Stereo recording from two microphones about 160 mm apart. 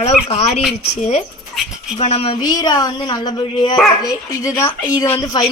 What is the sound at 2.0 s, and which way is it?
A woman's voice, 40° left (ahead or behind).